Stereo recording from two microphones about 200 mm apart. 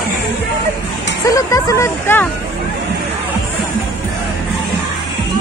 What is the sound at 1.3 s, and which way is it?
Speech, 15° left (ahead or behind).